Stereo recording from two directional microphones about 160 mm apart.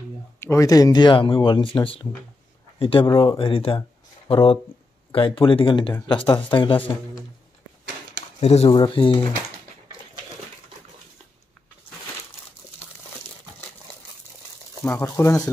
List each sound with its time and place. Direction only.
0.4 s speech: 20° left (ahead or behind)
8.4 s speech: 40° left (ahead or behind)
14.9 s speech: 15° left (ahead or behind)